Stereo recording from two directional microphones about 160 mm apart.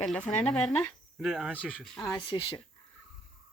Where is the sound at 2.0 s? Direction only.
25° left (ahead or behind).